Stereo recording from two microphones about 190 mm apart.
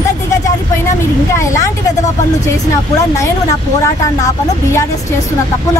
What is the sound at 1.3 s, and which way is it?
Speech, 15° left (ahead or behind).